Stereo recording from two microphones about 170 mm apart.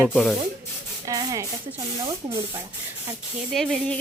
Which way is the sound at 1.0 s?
20° right (ahead or behind).